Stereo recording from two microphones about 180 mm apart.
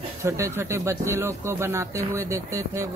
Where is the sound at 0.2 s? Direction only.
15° right (ahead or behind).